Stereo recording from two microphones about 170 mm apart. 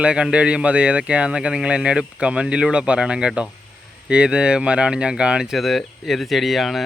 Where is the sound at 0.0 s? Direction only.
5° right (ahead or behind).